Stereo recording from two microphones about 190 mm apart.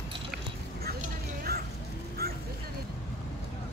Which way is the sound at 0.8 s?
55° right (ahead or behind).